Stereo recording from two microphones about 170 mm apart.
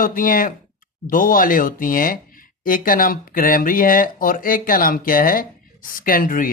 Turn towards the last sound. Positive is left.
turn(degrees=55)  # may be behind; listen again after turning